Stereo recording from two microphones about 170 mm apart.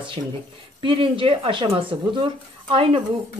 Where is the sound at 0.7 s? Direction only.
30° right (ahead or behind).